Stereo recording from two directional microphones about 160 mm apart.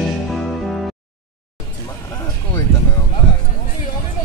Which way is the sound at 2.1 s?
20° left (ahead or behind).